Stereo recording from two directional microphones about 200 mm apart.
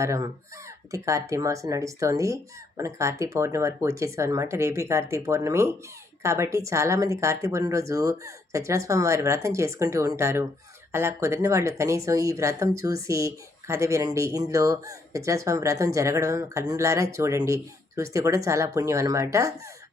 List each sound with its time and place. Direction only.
0.0 s speech: 15° right (ahead or behind)